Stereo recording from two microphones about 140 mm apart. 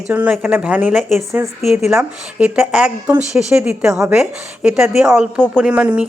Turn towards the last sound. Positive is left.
turn(degrees=-10)  # may be behind; listen again after turning